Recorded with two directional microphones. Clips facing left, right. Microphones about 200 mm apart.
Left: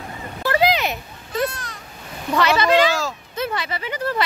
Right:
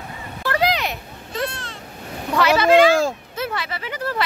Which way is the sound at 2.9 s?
55° right (ahead or behind).